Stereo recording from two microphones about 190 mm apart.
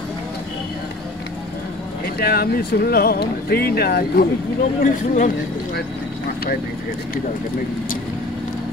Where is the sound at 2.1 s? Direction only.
55° left (ahead or behind).